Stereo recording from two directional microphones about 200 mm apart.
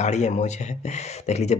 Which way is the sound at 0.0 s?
35° left (ahead or behind).